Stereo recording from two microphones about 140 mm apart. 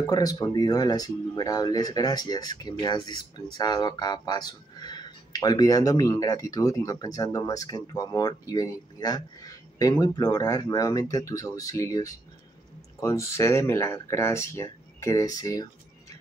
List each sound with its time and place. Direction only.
0.0 s speech: 25° left (ahead or behind)